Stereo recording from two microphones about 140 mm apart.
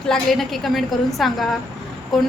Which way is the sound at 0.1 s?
Centre (ahead or behind).